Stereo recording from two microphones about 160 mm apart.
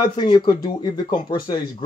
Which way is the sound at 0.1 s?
30° left (ahead or behind).